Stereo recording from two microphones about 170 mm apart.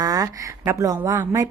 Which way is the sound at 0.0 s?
20° right (ahead or behind).